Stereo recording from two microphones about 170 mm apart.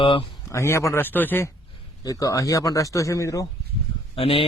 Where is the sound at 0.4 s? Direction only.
15° left (ahead or behind).